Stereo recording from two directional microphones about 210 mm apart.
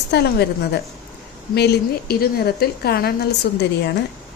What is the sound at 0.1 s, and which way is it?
A woman's voice, 50° left (ahead or behind).